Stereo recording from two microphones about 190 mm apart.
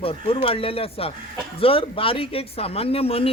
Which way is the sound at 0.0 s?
30° left (ahead or behind).